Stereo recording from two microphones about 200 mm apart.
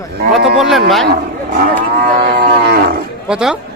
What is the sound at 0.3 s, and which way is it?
Speech, centre (ahead or behind).